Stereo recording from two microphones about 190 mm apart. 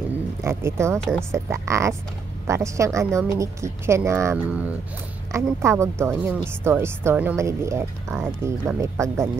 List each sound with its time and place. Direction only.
0.4 s speech: 15° right (ahead or behind)